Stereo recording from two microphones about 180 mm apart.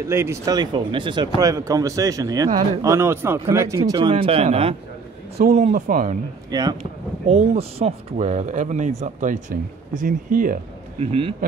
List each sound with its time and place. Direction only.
0.0 s speech: 15° right (ahead or behind); by 6.1 s 45° right (ahead or behind)
6.5 s speech: 20° right (ahead or behind)
6.8 s speech: 35° right (ahead or behind)